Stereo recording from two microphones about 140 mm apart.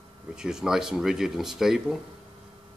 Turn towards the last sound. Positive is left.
turn(degrees=-5)  # may be behind; listen again after turning